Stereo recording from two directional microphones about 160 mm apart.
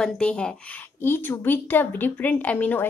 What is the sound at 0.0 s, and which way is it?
A woman's voice, 5° left (ahead or behind).